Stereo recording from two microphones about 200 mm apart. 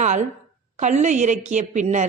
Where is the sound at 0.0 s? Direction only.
35° right (ahead or behind).